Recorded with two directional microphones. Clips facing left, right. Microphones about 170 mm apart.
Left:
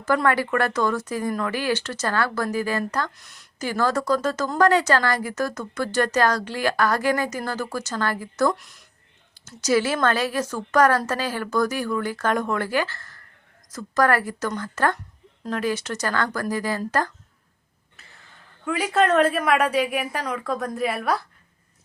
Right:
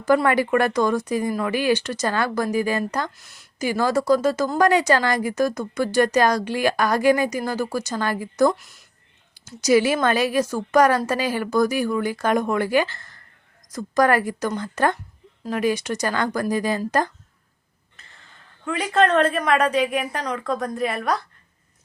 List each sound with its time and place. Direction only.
0.0 s speech: 15° right (ahead or behind)
3.1 s a woman's voice: centre (ahead or behind)
8.5 s a woman's voice: centre (ahead or behind)
9.6 s speech: 15° right (ahead or behind)
18.0 s a sound: 5° left (ahead or behind)
18.6 s a woman's voice: 5° left (ahead or behind)